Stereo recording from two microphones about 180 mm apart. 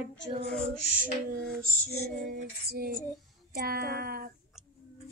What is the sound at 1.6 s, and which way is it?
Female singing, 55° right (ahead or behind).